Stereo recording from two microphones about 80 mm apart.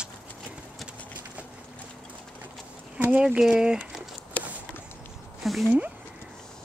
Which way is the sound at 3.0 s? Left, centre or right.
Centre.